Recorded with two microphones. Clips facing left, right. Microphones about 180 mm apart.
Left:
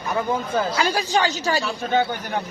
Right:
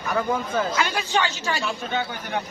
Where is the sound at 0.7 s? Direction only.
35° left (ahead or behind).